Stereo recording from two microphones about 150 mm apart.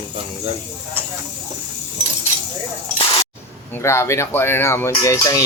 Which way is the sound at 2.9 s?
40° left (ahead or behind).